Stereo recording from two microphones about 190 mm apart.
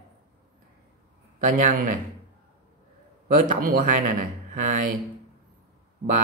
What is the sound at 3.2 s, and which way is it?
Speech, 45° right (ahead or behind).